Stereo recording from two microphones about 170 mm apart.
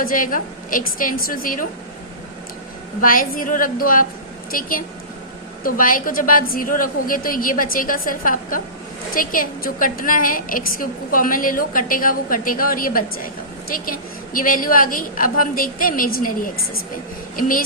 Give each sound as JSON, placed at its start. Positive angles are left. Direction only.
{"t": 0.0, "sound": "a woman's voice", "side_deg": 55}
{"t": 3.0, "sound": "a woman's voice", "side_deg": 55}